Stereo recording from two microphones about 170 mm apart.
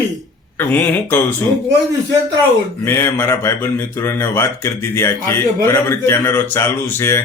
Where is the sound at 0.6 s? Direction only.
10° left (ahead or behind).